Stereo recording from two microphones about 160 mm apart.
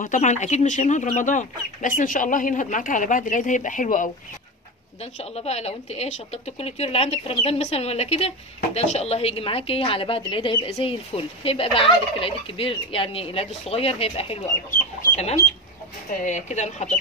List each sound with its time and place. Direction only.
0.0 s speech: 50° left (ahead or behind)
5.3 s speech: 40° left (ahead or behind)
16.1 s speech: 50° left (ahead or behind)